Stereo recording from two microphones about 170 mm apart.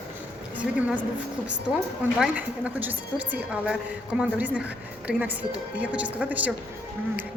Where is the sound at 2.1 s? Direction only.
5° right (ahead or behind).